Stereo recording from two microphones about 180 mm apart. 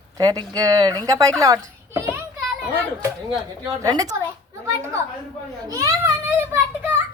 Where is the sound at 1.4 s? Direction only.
20° right (ahead or behind).